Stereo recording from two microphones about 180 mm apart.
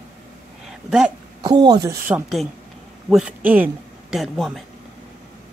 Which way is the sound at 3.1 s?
5° right (ahead or behind).